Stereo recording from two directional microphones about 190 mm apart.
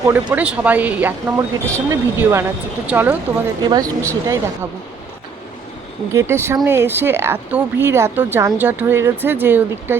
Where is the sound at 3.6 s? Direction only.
20° right (ahead or behind).